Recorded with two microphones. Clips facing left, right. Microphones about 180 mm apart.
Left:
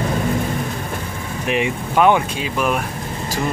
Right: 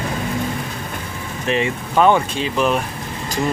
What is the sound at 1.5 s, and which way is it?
Speech, 10° left (ahead or behind).